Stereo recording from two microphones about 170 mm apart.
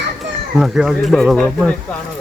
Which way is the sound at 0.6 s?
5° right (ahead or behind).